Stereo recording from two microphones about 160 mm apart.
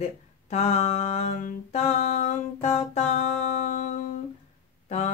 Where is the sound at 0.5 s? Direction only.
45° left (ahead or behind).